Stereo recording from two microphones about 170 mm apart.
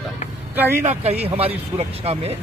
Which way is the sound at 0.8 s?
40° right (ahead or behind).